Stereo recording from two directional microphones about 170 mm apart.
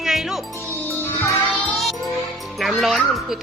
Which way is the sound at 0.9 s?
10° left (ahead or behind).